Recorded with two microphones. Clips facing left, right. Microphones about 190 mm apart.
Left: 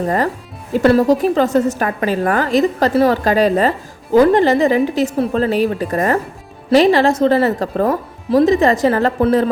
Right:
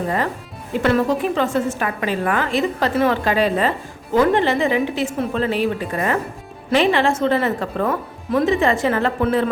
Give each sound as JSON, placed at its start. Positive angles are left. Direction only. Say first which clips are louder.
{"t": 0.7, "sound": "a woman's voice", "louder": "left 6 dB", "side_deg": 35}